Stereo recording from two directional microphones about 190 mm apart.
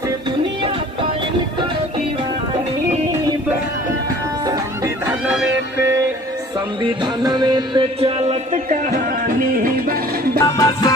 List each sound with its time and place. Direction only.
6.8 s music: 25° right (ahead or behind); by 9.7 s 40° right (ahead or behind)
10.4 s music: 20° left (ahead or behind)